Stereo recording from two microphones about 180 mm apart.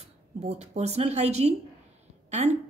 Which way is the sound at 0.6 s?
35° right (ahead or behind).